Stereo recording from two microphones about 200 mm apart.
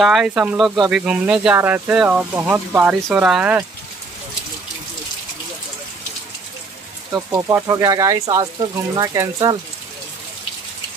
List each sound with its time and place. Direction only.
0.0 s speech: 5° right (ahead or behind)
7.1 s speech: 5° right (ahead or behind)